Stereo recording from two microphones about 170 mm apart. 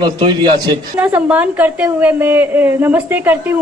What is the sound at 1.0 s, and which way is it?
A woman's voice, 10° right (ahead or behind).